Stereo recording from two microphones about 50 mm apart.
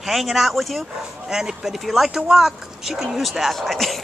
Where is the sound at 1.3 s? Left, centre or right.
Centre.